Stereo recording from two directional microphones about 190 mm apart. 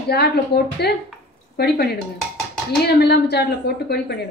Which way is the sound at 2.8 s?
60° left (ahead or behind).